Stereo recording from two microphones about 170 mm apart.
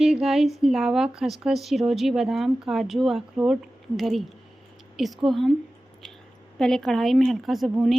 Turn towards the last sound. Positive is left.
turn(degrees=0)  # may be behind; listen again after turning